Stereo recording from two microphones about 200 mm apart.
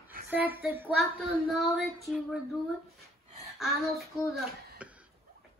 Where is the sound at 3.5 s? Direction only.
Centre (ahead or behind).